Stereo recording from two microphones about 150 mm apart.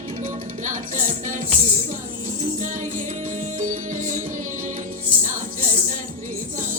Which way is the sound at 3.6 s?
60° right (ahead or behind).